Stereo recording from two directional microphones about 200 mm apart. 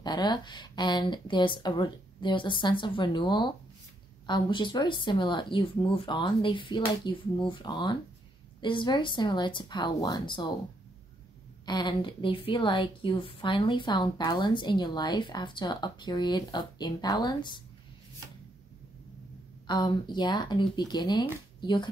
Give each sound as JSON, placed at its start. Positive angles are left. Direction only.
{"t": 0.0, "sound": "a woman's voice", "side_deg": 20}
{"t": 11.6, "sound": "a woman's voice", "side_deg": 20}
{"t": 19.6, "sound": "a woman's voice", "side_deg": 20}